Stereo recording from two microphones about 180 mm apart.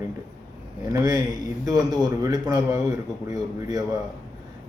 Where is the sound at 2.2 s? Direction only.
20° right (ahead or behind).